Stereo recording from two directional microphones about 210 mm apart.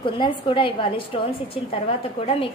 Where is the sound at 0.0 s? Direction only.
25° left (ahead or behind).